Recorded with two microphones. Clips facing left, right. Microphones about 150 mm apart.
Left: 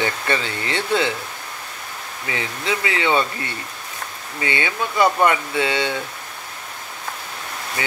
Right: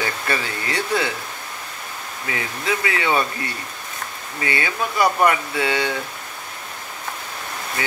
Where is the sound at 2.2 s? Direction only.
25° left (ahead or behind).